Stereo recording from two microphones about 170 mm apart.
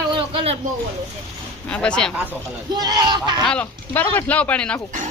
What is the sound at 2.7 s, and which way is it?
Speech, 25° right (ahead or behind).